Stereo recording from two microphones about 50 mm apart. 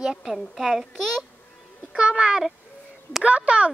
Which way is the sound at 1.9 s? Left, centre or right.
Centre.